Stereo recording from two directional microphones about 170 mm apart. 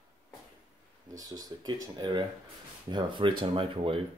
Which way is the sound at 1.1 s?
20° right (ahead or behind).